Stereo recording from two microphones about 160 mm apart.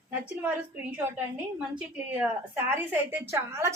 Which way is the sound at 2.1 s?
10° right (ahead or behind).